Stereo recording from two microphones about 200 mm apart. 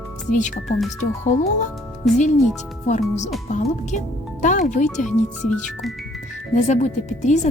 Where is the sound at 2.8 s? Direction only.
35° left (ahead or behind).